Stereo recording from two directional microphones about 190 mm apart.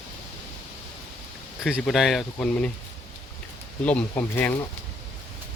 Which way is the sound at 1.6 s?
Centre (ahead or behind).